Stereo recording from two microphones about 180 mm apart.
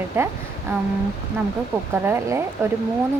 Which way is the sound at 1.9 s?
10° right (ahead or behind).